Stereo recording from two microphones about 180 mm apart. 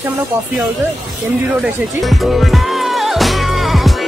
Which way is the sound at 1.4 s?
5° right (ahead or behind).